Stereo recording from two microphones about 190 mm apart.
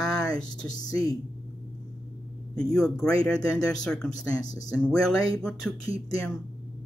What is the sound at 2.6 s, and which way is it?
Speech, 5° left (ahead or behind).